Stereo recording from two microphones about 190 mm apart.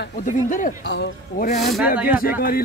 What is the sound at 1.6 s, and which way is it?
Speech, centre (ahead or behind).